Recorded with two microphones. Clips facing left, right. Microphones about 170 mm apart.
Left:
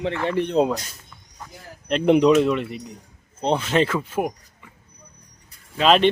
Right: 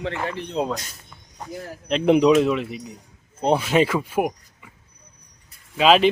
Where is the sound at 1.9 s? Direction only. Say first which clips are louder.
Even; centre (ahead or behind).